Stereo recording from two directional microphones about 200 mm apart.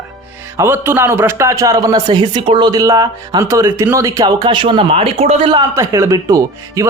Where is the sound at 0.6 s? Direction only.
10° right (ahead or behind).